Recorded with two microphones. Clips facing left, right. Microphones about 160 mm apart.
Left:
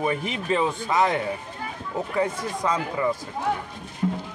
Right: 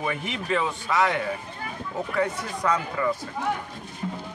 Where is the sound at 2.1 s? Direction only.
20° left (ahead or behind).